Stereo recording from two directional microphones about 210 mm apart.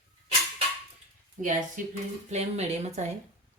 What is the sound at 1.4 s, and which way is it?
Speech, 35° right (ahead or behind).